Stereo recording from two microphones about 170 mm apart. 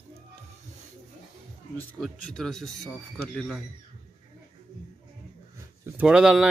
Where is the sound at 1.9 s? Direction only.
5° left (ahead or behind).